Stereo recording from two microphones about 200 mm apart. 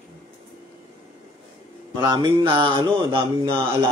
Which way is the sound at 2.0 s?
20° right (ahead or behind).